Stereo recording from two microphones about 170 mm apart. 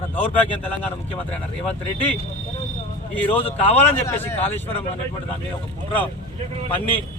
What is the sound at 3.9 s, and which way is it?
Speech, 10° left (ahead or behind).